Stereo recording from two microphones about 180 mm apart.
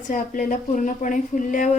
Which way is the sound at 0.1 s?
50° left (ahead or behind).